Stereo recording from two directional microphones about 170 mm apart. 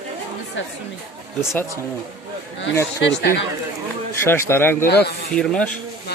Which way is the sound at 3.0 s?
85° left.